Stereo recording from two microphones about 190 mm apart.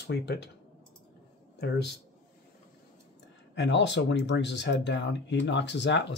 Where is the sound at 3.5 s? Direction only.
65° left (ahead or behind).